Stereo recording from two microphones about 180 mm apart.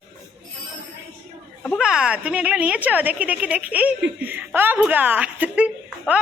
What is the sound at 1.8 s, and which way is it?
A woman's voice, 5° right (ahead or behind).